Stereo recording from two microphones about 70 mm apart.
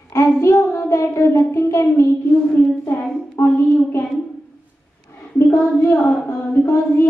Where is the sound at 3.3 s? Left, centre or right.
Left.